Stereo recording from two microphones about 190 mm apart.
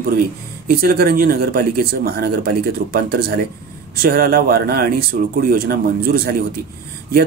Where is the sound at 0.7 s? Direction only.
50° right (ahead or behind).